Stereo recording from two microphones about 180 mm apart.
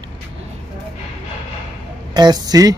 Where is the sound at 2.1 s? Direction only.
25° right (ahead or behind).